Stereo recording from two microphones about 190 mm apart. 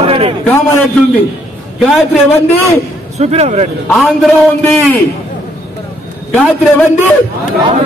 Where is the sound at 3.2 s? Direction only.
35° right (ahead or behind).